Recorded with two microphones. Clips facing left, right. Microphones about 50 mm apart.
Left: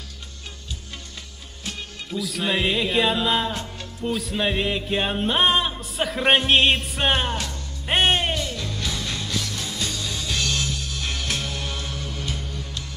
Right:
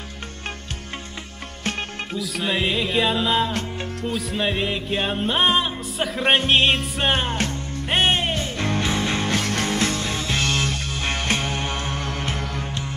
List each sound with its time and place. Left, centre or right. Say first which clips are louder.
1.6 s music: right 7 dB; right
2.1 s music: even; centre
8.4 s music: right 5 dB; right
9.9 s music: right 4 dB; right
10.7 s music: right 4 dB; right
12.0 s music: right 5 dB; right